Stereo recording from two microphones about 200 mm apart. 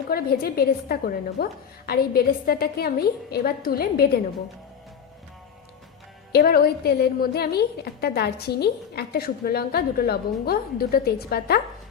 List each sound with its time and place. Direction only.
0.1 s a woman's voice: 50° left (ahead or behind)
6.3 s a woman's voice: 50° left (ahead or behind)